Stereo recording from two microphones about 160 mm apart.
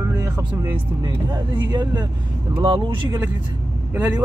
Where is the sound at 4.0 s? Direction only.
20° right (ahead or behind).